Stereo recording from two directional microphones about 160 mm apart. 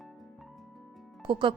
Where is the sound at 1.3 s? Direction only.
30° right (ahead or behind).